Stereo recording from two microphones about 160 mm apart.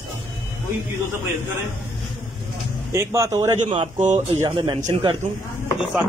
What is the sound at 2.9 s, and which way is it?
Speech, 15° right (ahead or behind).